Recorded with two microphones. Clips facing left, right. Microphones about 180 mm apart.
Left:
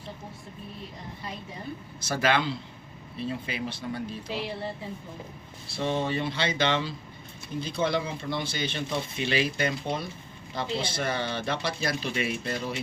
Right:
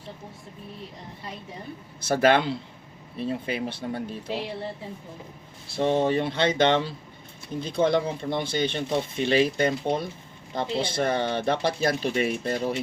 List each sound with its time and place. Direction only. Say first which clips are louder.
2.0 s a man's voice: right 6 dB; 55° right (ahead or behind)
5.7 s speech: right 6 dB; 50° right (ahead or behind)